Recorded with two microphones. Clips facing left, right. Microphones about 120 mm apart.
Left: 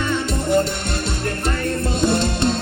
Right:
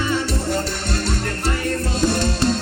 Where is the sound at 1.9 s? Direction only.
25° left (ahead or behind).